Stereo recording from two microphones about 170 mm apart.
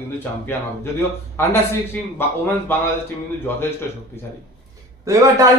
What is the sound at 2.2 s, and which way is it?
Speech, 10° left (ahead or behind).